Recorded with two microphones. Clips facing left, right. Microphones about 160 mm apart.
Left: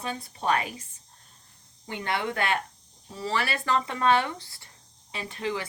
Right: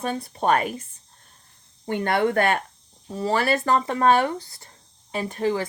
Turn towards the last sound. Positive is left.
turn(degrees=-40)  # may be behind; listen again after turning